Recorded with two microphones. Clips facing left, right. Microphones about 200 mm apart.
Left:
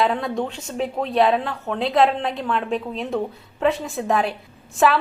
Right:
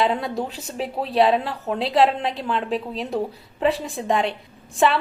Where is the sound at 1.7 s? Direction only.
Centre (ahead or behind).